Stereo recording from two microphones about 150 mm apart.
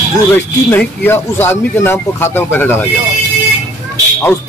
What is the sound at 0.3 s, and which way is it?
Speech, 15° left (ahead or behind).